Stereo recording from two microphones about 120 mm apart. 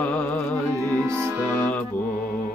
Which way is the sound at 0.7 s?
25° right (ahead or behind).